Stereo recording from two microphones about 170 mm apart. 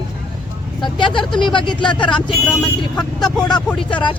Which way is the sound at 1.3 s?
30° left (ahead or behind).